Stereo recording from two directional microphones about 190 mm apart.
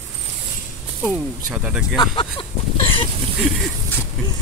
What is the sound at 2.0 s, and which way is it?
Speech, 25° left (ahead or behind).